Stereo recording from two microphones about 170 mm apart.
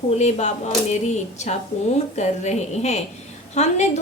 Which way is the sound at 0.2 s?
40° left (ahead or behind).